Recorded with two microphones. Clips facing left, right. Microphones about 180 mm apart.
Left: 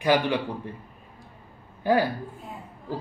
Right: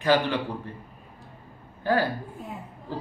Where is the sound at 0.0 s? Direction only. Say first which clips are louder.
Even; 15° left (ahead or behind).